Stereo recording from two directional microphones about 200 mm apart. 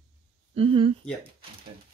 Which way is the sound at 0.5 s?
30° right (ahead or behind).